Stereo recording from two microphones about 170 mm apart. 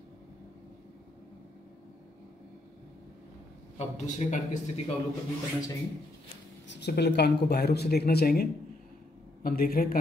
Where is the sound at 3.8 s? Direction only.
45° left (ahead or behind).